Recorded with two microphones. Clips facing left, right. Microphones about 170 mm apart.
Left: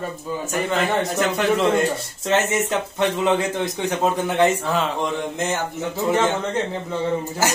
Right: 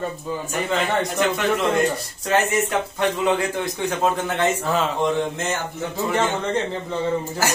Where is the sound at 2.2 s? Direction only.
25° left (ahead or behind).